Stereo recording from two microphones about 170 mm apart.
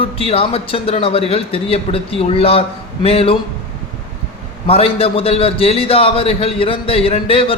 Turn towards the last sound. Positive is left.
turn(degrees=35)  # may be behind; listen again after turning